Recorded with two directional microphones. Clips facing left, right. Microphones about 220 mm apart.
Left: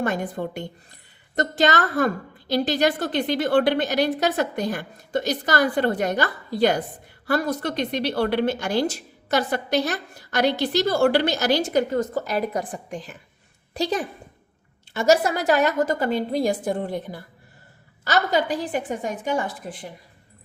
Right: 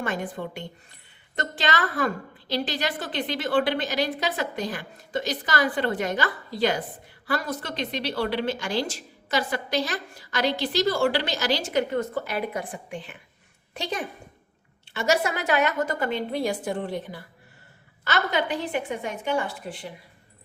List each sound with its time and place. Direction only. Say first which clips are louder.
0.0 s a woman's voice: left 4 dB; 45° left (ahead or behind); by 8.9 s 60° left (ahead or behind)
10.3 s a woman's voice: left 4 dB; 55° left (ahead or behind)
11.6 s a woman's voice: left 3 dB; 40° left (ahead or behind)